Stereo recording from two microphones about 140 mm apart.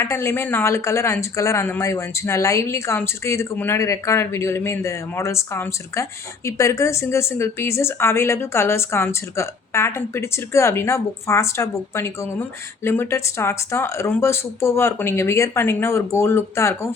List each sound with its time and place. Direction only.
0.0 s speech: 15° left (ahead or behind)